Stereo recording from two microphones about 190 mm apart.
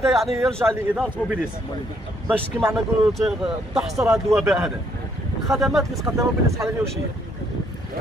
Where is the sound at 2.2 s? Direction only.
10° right (ahead or behind).